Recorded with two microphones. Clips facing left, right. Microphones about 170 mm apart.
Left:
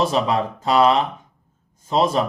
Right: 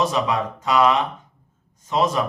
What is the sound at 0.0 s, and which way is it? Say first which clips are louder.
Speech: left 2 dB; 30° left (ahead or behind).